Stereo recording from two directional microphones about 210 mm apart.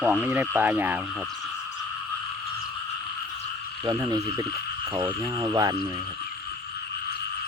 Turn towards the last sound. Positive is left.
turn(degrees=-20)  # may be behind; listen again after turning